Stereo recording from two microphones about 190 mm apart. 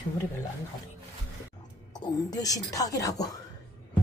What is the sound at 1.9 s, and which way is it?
A woman's voice, 20° left (ahead or behind).